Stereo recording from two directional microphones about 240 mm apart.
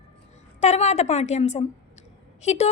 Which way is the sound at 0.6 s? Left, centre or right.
Left.